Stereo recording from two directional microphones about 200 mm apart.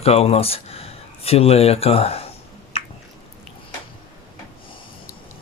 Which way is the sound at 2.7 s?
30° left (ahead or behind).